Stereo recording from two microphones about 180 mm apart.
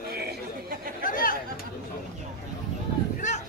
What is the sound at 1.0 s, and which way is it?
Chatter, 50° left (ahead or behind).